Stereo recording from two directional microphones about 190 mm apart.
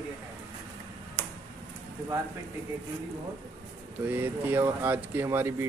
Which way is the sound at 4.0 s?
10° right (ahead or behind).